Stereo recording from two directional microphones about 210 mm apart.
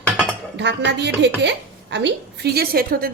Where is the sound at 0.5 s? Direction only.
55° right (ahead or behind).